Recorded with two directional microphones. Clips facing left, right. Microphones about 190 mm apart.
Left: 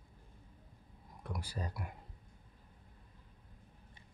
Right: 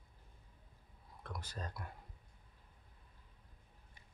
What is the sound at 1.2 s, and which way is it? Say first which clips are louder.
Speech: left 4 dB; 10° left (ahead or behind).